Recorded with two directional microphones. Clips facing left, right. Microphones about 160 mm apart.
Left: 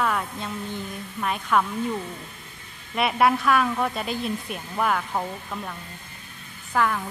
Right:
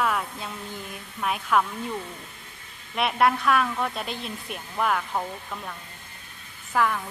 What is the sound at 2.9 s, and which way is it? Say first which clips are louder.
Speech: left 2 dB; centre (ahead or behind).